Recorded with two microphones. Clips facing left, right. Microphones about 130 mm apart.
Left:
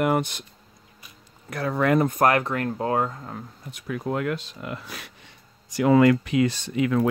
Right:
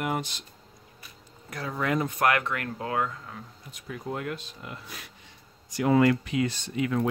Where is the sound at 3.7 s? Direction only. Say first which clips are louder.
Left 7 dB; 80° left.